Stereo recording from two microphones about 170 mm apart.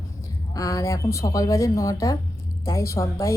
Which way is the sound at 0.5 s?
20° left (ahead or behind).